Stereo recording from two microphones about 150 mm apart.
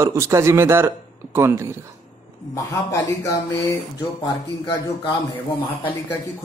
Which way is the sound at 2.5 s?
20° left (ahead or behind).